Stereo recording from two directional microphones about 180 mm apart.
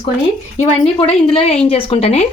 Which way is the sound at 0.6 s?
35° left (ahead or behind).